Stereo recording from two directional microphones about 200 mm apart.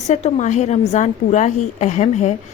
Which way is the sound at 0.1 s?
35° left (ahead or behind).